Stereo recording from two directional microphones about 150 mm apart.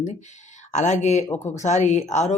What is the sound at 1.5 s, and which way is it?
Speech, 50° left (ahead or behind).